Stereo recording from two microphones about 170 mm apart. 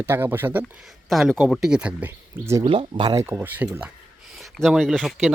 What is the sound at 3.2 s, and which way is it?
Speech, 10° right (ahead or behind).